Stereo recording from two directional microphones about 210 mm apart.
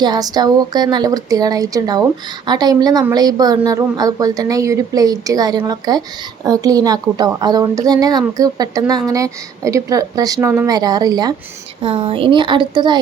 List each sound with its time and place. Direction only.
0.0 s a woman's voice: 20° right (ahead or behind)